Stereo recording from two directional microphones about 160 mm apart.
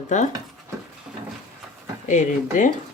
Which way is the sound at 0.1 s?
50° left (ahead or behind).